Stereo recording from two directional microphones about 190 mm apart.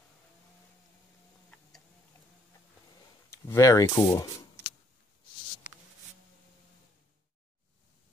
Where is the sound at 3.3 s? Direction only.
15° left (ahead or behind).